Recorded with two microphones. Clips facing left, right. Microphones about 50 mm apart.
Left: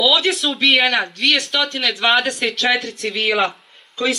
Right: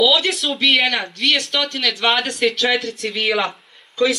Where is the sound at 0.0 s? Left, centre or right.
Centre.